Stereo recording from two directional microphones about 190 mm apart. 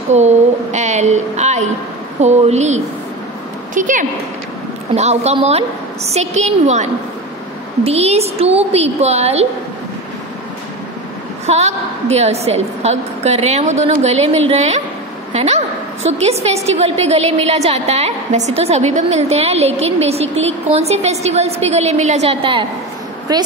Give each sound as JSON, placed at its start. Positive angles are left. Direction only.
{"t": 0.1, "sound": "a woman's voice", "side_deg": -35}
{"t": 11.4, "sound": "a woman's voice", "side_deg": -35}